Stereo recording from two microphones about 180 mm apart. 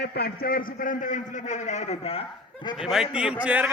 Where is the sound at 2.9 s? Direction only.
5° right (ahead or behind).